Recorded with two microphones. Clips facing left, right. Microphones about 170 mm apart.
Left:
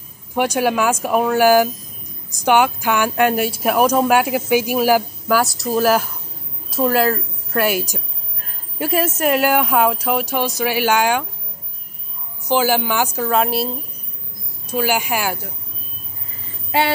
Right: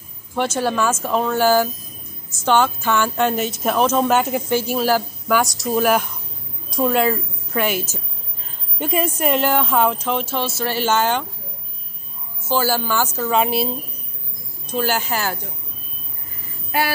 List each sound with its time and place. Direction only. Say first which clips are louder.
0.3 s a woman's voice: left 3 dB; 15° left (ahead or behind)
5.4 s a woman's voice: left 1 dB; centre (ahead or behind)
12.4 s a woman's voice: left 3 dB; 15° left (ahead or behind)
13.3 s speech: right 1 dB; centre (ahead or behind)
14.7 s a woman's voice: left 2 dB; 10° left (ahead or behind)